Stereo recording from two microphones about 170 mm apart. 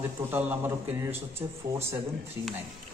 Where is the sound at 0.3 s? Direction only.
10° right (ahead or behind).